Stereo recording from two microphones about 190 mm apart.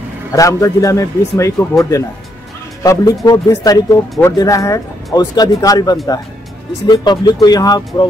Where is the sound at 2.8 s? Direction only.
20° left (ahead or behind).